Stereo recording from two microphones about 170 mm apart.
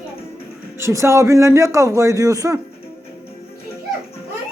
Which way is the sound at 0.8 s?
15° right (ahead or behind).